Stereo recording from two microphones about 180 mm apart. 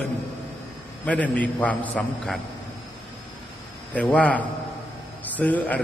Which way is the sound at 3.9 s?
10° left (ahead or behind).